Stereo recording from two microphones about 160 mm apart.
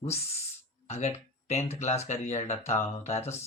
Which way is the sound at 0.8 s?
40° left (ahead or behind).